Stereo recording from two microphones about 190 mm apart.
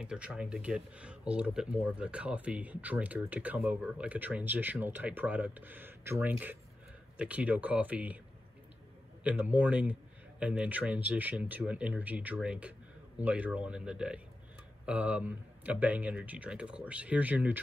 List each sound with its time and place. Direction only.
0.0 s speech: 5° right (ahead or behind)
9.2 s speech: 10° right (ahead or behind)